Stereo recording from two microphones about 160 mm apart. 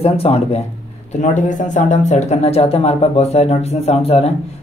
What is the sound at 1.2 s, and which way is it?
Speech, 50° left (ahead or behind).